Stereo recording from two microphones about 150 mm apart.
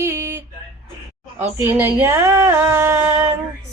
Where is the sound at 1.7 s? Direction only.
15° right (ahead or behind).